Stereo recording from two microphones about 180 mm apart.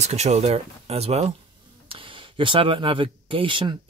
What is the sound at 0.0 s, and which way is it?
Speech, 40° right (ahead or behind).